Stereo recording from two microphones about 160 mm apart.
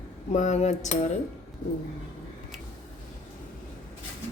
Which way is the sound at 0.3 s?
45° left (ahead or behind).